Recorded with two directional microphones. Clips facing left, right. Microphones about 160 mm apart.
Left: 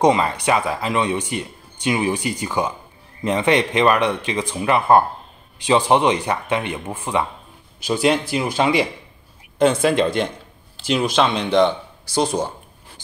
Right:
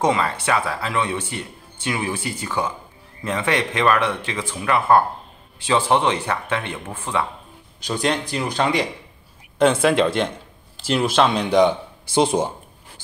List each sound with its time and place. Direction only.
0.0 s speech: 20° left (ahead or behind)
9.6 s speech: centre (ahead or behind)
12.1 s speech: 25° right (ahead or behind)